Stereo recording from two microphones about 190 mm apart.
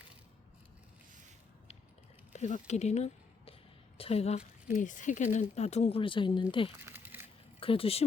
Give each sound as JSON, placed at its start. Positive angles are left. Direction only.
{"t": 2.3, "sound": "speech", "side_deg": 40}
{"t": 6.7, "sound": "a sound", "side_deg": -10}
{"t": 7.6, "sound": "speech", "side_deg": 30}